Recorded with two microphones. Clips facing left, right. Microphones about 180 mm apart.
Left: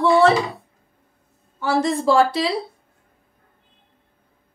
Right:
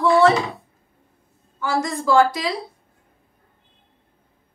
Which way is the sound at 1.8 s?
30° left (ahead or behind).